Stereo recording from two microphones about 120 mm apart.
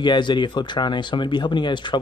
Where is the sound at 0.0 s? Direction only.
40° left (ahead or behind).